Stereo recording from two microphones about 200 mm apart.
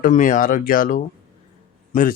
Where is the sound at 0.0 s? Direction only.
40° left (ahead or behind).